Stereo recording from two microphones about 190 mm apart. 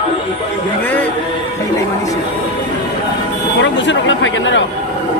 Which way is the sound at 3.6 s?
75° left (ahead or behind).